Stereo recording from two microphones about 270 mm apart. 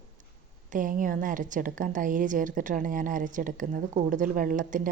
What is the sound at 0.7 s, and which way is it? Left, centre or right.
A woman's voice, right.